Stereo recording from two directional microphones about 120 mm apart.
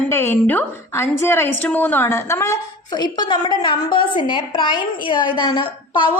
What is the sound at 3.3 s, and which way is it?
A woman's voice, 40° left (ahead or behind).